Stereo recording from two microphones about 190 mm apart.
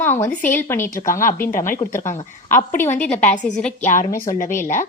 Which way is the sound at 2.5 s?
10° left (ahead or behind).